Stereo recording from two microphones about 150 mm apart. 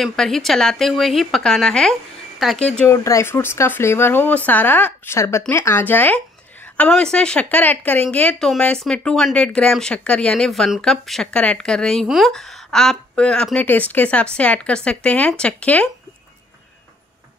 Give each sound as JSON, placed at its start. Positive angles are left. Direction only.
{"t": 0.0, "sound": "speech", "side_deg": 0}
{"t": 2.9, "sound": "speech", "side_deg": 20}